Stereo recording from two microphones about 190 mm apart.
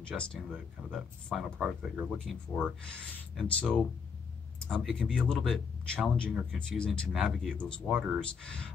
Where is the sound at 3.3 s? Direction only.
5° left (ahead or behind).